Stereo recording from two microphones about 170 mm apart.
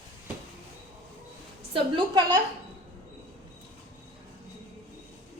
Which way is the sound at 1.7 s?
30° right (ahead or behind).